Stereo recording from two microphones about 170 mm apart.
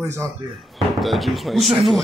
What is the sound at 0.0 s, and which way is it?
Speech, 15° right (ahead or behind).